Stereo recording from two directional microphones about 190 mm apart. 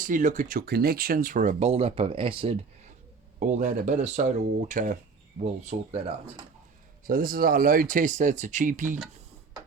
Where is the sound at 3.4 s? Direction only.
40° right (ahead or behind).